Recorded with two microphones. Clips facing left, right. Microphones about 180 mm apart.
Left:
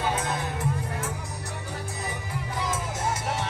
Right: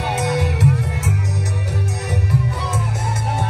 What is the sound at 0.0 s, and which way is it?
Music, 75° right (ahead or behind).